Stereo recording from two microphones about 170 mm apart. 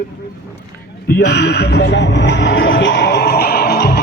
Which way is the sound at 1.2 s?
75° left (ahead or behind).